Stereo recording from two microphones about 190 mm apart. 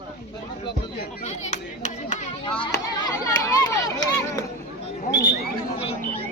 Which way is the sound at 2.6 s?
20° left (ahead or behind).